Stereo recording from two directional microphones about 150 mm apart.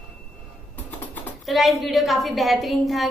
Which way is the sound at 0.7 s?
10° left (ahead or behind).